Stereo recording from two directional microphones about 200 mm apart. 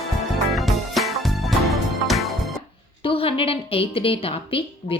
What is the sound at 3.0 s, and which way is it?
A woman's voice, 25° left (ahead or behind).